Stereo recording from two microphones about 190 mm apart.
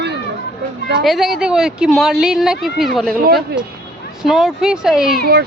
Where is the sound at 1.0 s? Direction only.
Centre (ahead or behind).